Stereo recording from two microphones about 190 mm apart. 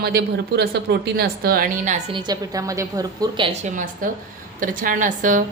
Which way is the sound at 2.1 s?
25° right (ahead or behind).